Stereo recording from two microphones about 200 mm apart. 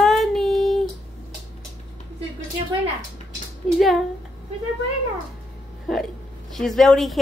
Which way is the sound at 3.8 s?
Centre (ahead or behind).